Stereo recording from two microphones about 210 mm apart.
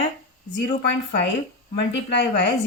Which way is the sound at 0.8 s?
55° left (ahead or behind).